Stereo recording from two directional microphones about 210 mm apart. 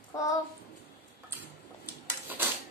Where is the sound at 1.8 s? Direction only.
10° right (ahead or behind).